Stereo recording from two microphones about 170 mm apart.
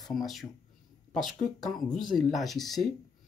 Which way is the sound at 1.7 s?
Centre (ahead or behind).